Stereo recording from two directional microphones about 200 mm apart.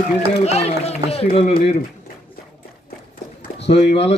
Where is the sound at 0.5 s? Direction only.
30° left (ahead or behind).